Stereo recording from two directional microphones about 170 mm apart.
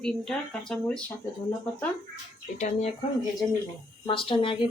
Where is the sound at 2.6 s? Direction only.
40° left (ahead or behind).